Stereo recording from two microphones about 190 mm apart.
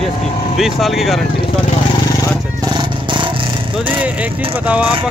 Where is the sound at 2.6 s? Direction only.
25° right (ahead or behind).